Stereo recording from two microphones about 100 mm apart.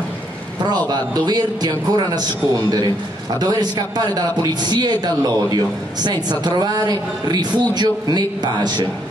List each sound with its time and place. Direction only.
0.8 s a man's voice: 45° right (ahead or behind)
3.3 s a man's voice: 40° right (ahead or behind)